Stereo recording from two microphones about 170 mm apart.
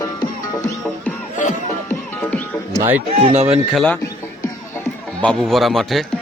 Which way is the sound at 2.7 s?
15° right (ahead or behind).